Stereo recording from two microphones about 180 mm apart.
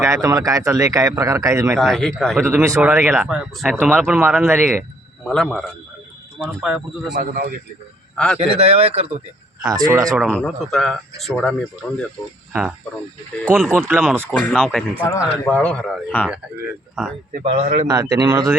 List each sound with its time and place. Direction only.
0.0 s speech: 20° right (ahead or behind)
1.8 s speech: centre (ahead or behind)
2.4 s speech: 15° right (ahead or behind)
5.2 s speech: 5° left (ahead or behind)
7.2 s a man's voice: 55° right (ahead or behind)
8.1 s a man's voice: 5° left (ahead or behind)
8.4 s speech: 35° right (ahead or behind)
9.6 s speech: 20° right (ahead or behind)
10.1 s speech: 5° left (ahead or behind)
13.4 s speech: centre (ahead or behind)
17.4 s speech: 35° right (ahead or behind)
17.8 s speech: 20° right (ahead or behind)